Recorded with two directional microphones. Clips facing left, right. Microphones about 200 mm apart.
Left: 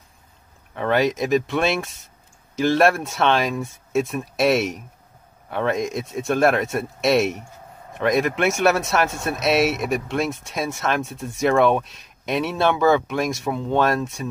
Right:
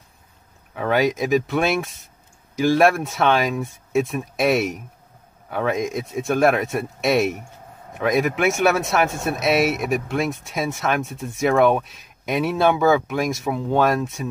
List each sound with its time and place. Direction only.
0.7 s speech: 5° right (ahead or behind)